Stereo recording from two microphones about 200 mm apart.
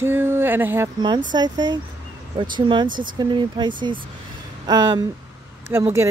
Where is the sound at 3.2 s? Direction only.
20° right (ahead or behind).